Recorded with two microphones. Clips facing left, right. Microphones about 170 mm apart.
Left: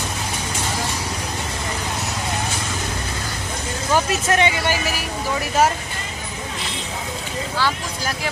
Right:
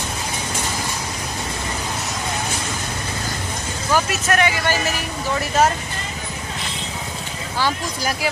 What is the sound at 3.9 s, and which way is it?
Speech, 25° left (ahead or behind).